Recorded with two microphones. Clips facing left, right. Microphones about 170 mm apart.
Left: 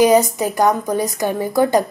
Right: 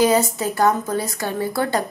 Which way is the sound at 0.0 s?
15° left (ahead or behind).